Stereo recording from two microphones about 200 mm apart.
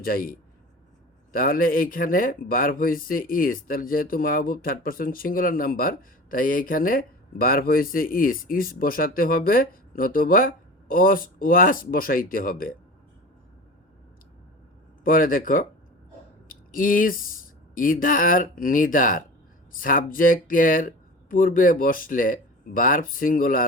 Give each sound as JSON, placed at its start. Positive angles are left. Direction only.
{"t": 0.0, "sound": "speech", "side_deg": 45}
{"t": 15.0, "sound": "speech", "side_deg": 45}